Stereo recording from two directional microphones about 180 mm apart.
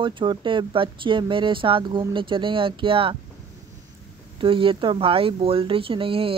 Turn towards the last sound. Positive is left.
turn(degrees=-30)  # may be behind; listen again after turning